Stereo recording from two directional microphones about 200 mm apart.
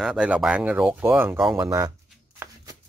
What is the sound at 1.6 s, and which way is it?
Speech, 20° right (ahead or behind).